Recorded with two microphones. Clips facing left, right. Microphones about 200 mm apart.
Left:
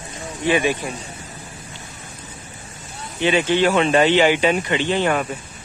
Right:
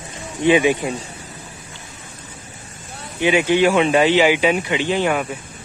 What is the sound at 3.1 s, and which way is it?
Speech, 10° right (ahead or behind).